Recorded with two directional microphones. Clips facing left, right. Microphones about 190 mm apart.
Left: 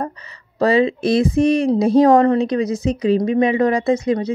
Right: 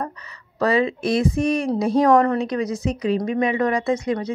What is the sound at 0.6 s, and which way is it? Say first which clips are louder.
A woman's voice: left 4 dB; 30° left (ahead or behind).